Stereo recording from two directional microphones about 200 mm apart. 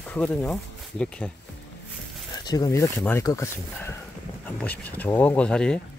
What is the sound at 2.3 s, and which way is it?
Speech, 20° left (ahead or behind).